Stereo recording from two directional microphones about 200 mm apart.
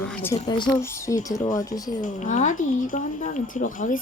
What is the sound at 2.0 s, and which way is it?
Speech, 40° left (ahead or behind).